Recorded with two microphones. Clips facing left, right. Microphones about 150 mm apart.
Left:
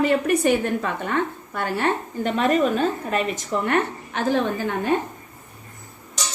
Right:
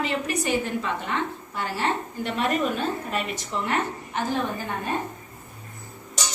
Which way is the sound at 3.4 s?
60° left (ahead or behind).